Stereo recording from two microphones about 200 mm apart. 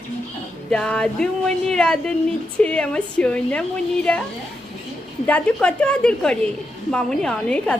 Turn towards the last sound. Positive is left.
turn(degrees=5)  # may be behind; listen again after turning